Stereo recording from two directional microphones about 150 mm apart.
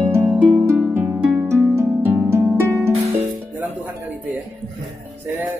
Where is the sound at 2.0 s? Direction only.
15° right (ahead or behind).